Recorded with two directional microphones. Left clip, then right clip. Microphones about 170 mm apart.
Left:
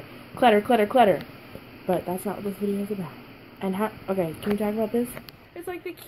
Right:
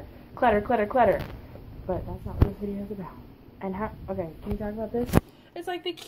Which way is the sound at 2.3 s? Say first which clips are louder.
Left 11 dB; 40° left (ahead or behind).